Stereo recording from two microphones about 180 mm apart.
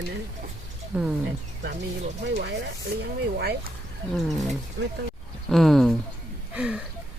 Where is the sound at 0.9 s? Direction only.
5° right (ahead or behind).